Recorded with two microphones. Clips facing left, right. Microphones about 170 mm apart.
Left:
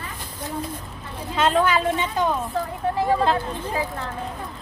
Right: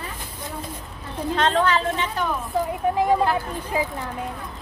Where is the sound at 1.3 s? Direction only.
10° left (ahead or behind).